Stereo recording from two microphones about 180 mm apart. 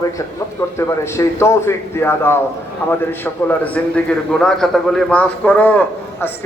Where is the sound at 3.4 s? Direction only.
10° left (ahead or behind).